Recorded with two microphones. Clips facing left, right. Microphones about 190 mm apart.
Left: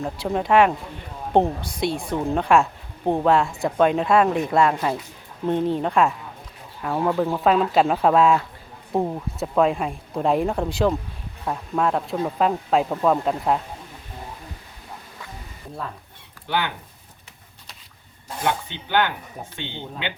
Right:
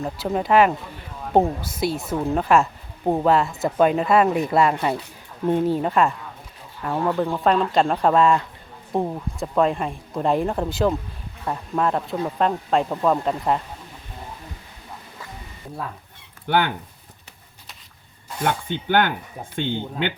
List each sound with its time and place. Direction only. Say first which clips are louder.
0.0 s speech: even; centre (ahead or behind)
16.5 s speech: right 4 dB; 50° right (ahead or behind)
18.4 s speech: right 2 dB; 50° right (ahead or behind)